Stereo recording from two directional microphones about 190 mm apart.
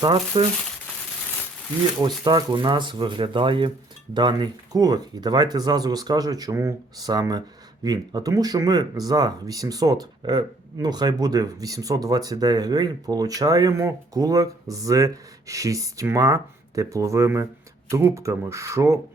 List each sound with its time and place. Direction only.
0.0 s speech: 25° right (ahead or behind)
2.0 s speech: 25° right (ahead or behind)